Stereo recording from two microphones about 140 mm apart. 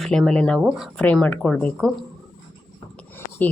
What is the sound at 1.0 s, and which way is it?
Speech, 10° left (ahead or behind).